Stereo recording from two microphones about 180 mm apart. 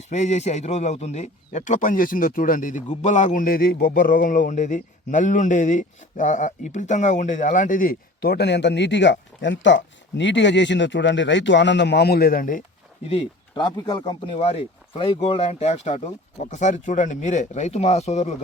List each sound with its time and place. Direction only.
0.1 s speech: 40° left (ahead or behind)
13.1 s speech: 30° left (ahead or behind)